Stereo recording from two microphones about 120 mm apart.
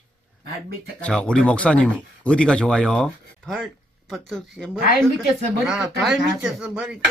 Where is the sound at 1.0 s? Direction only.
10° left (ahead or behind).